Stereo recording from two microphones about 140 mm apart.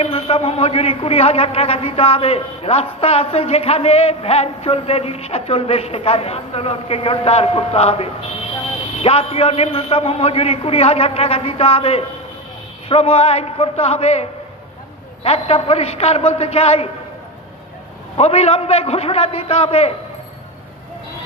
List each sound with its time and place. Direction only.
0.0 s a man's voice: 45° left (ahead or behind)
15.2 s a man's voice: 45° left (ahead or behind)
18.1 s a man's voice: 50° left (ahead or behind)